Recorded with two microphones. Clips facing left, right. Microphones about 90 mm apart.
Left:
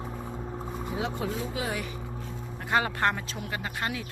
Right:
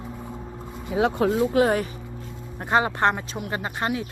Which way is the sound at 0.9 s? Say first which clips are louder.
Right 11 dB; 70° right (ahead or behind).